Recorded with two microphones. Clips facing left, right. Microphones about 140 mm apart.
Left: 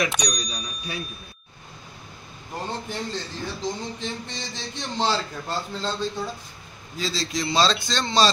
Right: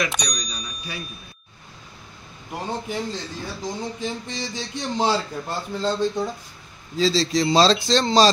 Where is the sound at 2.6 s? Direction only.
10° right (ahead or behind).